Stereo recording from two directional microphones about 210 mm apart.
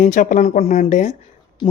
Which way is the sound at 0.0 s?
40° left (ahead or behind).